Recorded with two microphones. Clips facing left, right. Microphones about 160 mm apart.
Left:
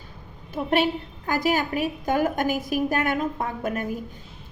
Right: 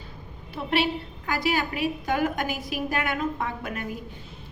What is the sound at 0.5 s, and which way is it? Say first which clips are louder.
A woman's voice: left 3 dB; 45° left (ahead or behind).